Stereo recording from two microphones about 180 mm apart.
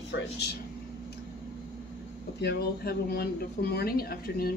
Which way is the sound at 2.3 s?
65° left (ahead or behind).